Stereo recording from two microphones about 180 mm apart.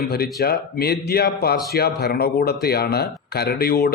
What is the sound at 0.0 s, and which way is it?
A man's voice, 60° left (ahead or behind).